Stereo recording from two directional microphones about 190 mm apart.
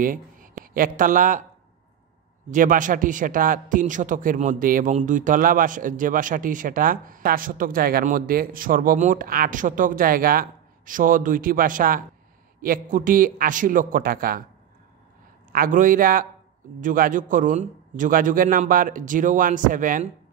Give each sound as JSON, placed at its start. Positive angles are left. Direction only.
{"t": 0.0, "sound": "a man's voice", "side_deg": -45}
{"t": 2.5, "sound": "a man's voice", "side_deg": -45}
{"t": 15.5, "sound": "a man's voice", "side_deg": -45}